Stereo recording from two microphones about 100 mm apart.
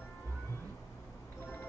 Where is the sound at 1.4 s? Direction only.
20° left (ahead or behind).